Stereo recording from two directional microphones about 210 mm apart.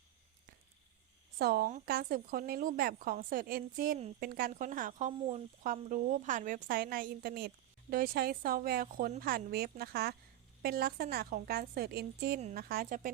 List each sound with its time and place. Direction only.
1.4 s speech: 45° right (ahead or behind)